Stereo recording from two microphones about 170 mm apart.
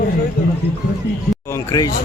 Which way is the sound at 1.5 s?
20° left (ahead or behind).